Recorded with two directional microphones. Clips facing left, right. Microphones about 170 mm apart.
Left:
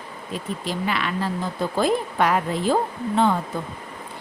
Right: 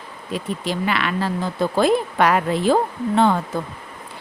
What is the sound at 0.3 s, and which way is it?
A woman's voice, 75° right (ahead or behind).